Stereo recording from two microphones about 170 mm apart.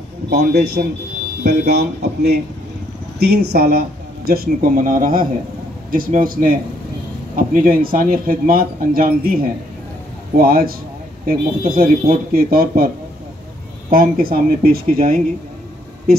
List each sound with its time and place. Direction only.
0.3 s speech: 70° right (ahead or behind)
3.5 s speech: 65° right (ahead or behind)